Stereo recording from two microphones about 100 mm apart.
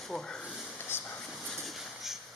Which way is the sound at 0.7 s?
20° left (ahead or behind).